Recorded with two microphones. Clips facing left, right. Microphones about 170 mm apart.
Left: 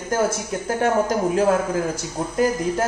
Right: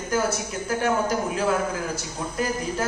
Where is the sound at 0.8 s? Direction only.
45° left (ahead or behind).